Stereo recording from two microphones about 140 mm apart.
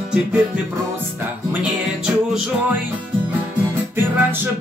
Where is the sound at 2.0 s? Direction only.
5° right (ahead or behind).